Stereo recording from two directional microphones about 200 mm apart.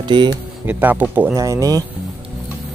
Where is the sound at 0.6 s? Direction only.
10° right (ahead or behind).